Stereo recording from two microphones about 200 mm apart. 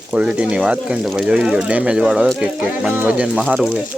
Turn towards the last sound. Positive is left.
turn(degrees=-5)  # may be behind; listen again after turning